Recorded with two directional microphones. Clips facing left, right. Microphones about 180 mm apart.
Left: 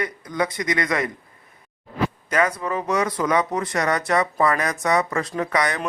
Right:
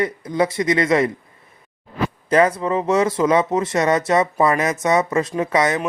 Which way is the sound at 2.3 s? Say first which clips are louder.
Right 8 dB; 30° right (ahead or behind).